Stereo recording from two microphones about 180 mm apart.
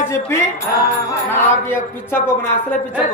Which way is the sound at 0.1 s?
15° left (ahead or behind).